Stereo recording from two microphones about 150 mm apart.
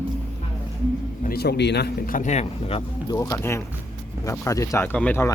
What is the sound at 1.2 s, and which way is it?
Speech, 85° left.